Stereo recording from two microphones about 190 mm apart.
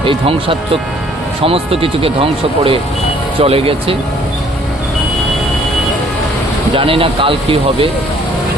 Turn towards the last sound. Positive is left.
turn(degrees=-30)  # may be behind; listen again after turning